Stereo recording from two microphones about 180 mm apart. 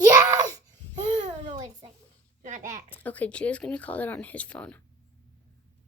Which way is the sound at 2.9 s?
10° left (ahead or behind).